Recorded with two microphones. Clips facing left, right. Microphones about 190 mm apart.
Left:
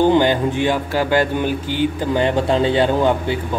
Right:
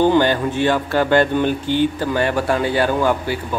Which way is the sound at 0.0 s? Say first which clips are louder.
Left 1 dB; 15° left (ahead or behind).